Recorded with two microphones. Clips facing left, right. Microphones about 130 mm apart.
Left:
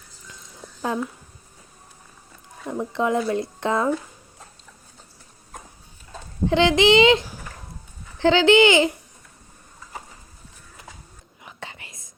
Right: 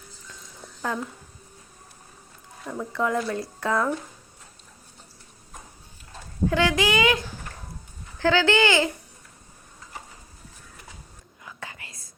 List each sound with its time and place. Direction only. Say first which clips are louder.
0.6 s a sound: left 4 dB; centre (ahead or behind)
2.6 s speech: left 3 dB; 20° left (ahead or behind)
6.5 s speech: left 7 dB; 20° left (ahead or behind)
11.4 s whispering: left 1 dB; 25° left (ahead or behind)